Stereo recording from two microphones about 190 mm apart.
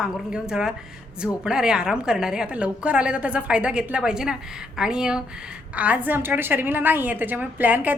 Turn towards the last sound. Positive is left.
turn(degrees=-10)  # may be behind; listen again after turning